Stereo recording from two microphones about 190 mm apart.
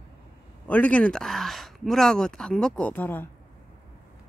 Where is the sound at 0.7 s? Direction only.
5° left (ahead or behind).